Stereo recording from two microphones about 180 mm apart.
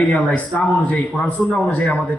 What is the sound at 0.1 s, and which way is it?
Speech, 5° left (ahead or behind).